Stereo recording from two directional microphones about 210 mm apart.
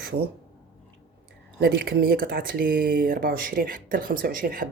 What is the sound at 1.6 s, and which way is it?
Speech, 50° right (ahead or behind).